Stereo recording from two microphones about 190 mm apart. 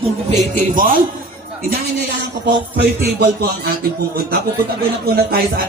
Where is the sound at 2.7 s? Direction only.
60° right (ahead or behind).